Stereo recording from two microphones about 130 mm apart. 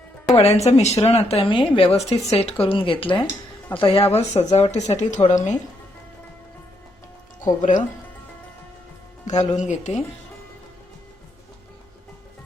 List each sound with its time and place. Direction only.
0.3 s speech: 55° left (ahead or behind)
2.0 s speech: 60° left (ahead or behind)
2.6 s speech: 45° left (ahead or behind); by 5.5 s 70° left (ahead or behind)
7.4 s speech: 80° left
9.2 s speech: 65° left (ahead or behind)